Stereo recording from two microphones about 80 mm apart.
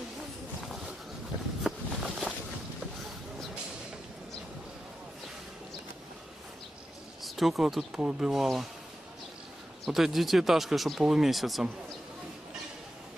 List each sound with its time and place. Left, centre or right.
1.6 s a sound: centre
7.2 s speech: centre
9.8 s speech: centre